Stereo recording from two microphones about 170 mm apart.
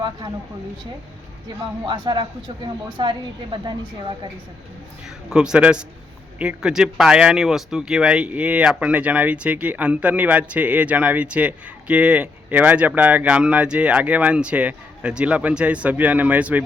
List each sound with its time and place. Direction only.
1.8 s a woman's voice: 25° right (ahead or behind)
5.0 s a man's voice: 5° right (ahead or behind)